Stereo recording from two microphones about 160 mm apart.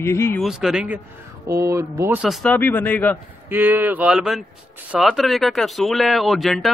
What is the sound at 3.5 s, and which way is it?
Speech, 10° right (ahead or behind).